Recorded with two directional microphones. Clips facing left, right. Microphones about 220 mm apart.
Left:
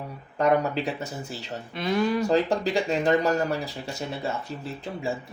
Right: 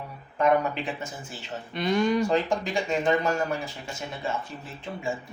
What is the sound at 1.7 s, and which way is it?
Speech, centre (ahead or behind).